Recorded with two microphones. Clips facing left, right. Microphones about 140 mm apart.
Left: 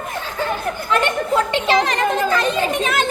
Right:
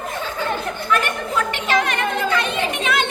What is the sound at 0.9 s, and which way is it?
Chatter, 25° left (ahead or behind).